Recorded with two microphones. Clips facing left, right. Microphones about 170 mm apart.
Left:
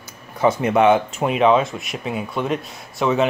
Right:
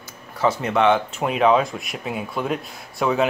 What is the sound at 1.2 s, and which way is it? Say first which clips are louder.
Speech: left 2 dB; centre (ahead or behind).